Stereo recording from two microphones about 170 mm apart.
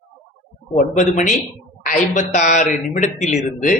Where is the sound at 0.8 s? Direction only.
45° left (ahead or behind).